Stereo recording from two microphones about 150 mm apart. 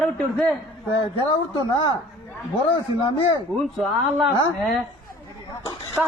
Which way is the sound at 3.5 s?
Centre (ahead or behind).